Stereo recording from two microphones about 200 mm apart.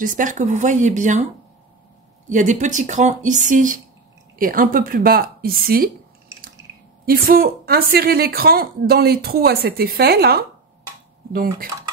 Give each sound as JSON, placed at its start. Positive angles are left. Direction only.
{"t": 0.0, "sound": "speech", "side_deg": -40}
{"t": 2.2, "sound": "a woman's voice", "side_deg": -40}
{"t": 7.1, "sound": "a woman's voice", "side_deg": -50}